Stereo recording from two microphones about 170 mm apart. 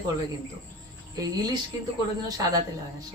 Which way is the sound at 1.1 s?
20° right (ahead or behind).